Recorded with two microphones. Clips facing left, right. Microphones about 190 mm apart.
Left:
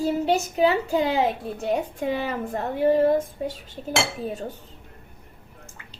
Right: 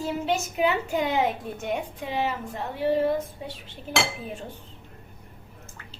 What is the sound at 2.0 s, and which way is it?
A woman's voice, 50° left (ahead or behind).